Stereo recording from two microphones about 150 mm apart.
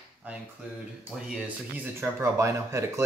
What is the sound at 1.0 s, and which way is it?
Speech, 5° right (ahead or behind).